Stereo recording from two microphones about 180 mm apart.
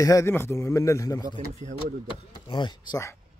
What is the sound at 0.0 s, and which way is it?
A man's voice, 15° left (ahead or behind).